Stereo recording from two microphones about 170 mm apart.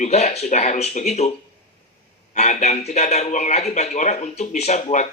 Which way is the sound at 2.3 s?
40° left (ahead or behind).